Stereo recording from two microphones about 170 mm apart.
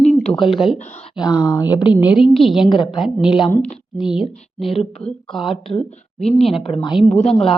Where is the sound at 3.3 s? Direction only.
30° left (ahead or behind).